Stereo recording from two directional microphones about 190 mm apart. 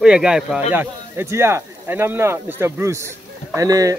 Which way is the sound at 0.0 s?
5° right (ahead or behind).